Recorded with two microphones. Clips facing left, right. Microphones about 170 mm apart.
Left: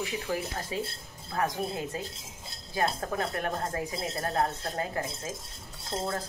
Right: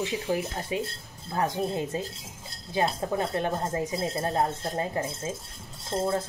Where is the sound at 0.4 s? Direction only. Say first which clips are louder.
Right 3 dB; 15° right (ahead or behind).